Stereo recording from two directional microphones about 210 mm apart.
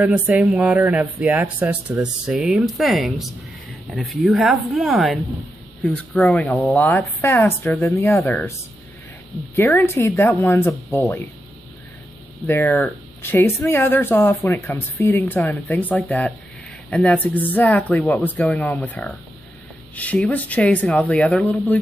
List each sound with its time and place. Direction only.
0.0 s speech: 5° right (ahead or behind)
9.6 s speech: 10° left (ahead or behind)
12.4 s speech: 10° left (ahead or behind)